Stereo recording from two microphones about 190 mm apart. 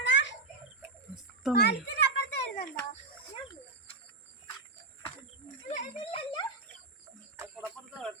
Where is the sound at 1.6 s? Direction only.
60° left (ahead or behind).